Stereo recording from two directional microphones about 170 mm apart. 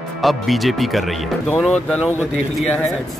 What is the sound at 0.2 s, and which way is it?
Speech, centre (ahead or behind).